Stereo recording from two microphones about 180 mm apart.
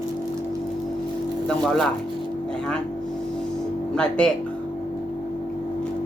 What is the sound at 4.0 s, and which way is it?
Speech, 5° left (ahead or behind).